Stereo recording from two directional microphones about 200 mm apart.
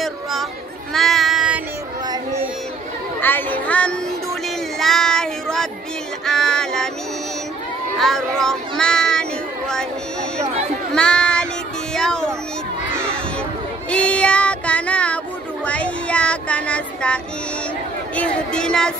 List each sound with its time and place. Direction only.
0.0 s chatter: centre (ahead or behind)
0.9 s a sound: centre (ahead or behind)
3.2 s speech: 10° left (ahead or behind)
4.7 s child singing: centre (ahead or behind)
8.0 s child singing: centre (ahead or behind)
10.4 s speech: 30° right (ahead or behind)
11.0 s child singing: 5° left (ahead or behind)
11.9 s a sound: 5° left (ahead or behind)
13.8 s child singing: 5° left (ahead or behind)